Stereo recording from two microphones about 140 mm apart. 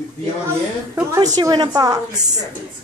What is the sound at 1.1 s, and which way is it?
Music, 25° right (ahead or behind).